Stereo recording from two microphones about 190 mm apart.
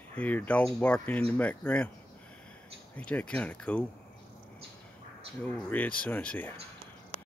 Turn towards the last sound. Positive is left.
turn(degrees=10)  # may be behind; listen again after turning